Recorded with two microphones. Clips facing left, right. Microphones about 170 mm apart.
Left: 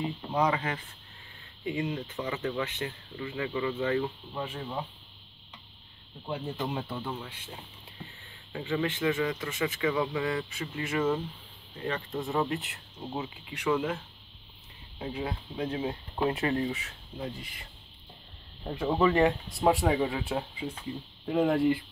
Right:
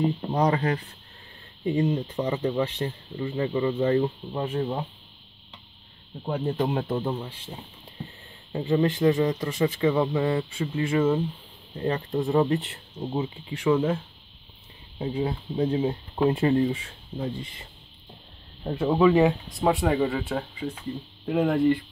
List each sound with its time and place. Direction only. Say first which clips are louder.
0.0 s speech: right 5 dB; 40° right (ahead or behind)
6.2 s speech: right 7 dB; 55° right (ahead or behind)
7.1 s speech: right 7 dB; 30° right (ahead or behind)
8.5 s speech: right 7 dB; 35° right (ahead or behind)
15.1 s speech: right 8 dB; 30° right (ahead or behind)
18.7 s speech: right 6 dB; centre (ahead or behind)